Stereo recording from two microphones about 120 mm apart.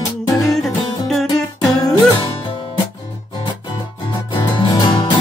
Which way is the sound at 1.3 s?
30° left (ahead or behind).